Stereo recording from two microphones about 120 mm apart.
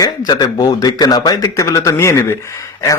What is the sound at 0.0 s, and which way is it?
A man's voice, 35° left (ahead or behind).